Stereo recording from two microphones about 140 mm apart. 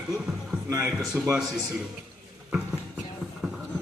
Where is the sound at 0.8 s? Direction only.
5° right (ahead or behind).